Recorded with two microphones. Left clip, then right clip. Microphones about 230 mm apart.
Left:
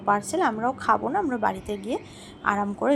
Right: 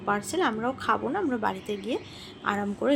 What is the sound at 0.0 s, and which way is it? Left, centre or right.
A woman's voice, centre.